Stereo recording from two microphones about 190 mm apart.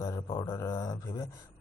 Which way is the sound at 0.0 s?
15° left (ahead or behind).